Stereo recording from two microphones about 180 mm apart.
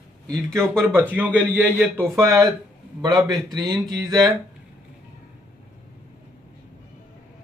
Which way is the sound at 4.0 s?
20° right (ahead or behind).